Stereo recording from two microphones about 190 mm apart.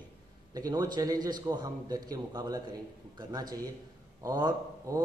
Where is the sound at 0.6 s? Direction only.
20° right (ahead or behind).